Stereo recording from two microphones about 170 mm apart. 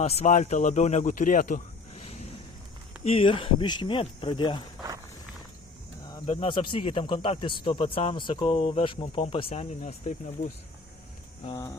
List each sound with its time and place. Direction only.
0.0 s speech: 45° left (ahead or behind)
2.0 s a sound: 35° left (ahead or behind)
3.0 s speech: 35° left (ahead or behind)
6.2 s a man's voice: 40° left (ahead or behind)
11.5 s speech: 20° left (ahead or behind)